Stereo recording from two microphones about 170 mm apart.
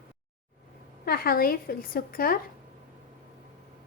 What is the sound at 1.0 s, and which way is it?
A woman's voice, 60° left (ahead or behind).